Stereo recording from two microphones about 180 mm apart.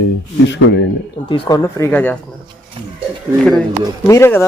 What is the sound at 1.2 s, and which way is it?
Speech, 25° left (ahead or behind).